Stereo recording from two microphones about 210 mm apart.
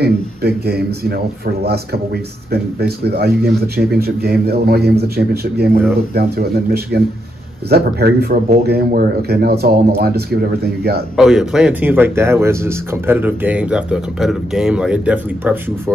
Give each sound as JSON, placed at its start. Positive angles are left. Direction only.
{"t": 0.0, "sound": "speech", "side_deg": -50}
{"t": 11.1, "sound": "speech", "side_deg": -5}